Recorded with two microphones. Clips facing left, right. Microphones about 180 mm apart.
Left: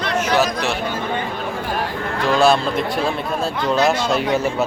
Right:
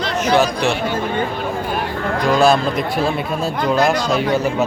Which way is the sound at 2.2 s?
40° right (ahead or behind).